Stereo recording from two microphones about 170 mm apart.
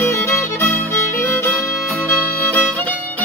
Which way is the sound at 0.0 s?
15° left (ahead or behind).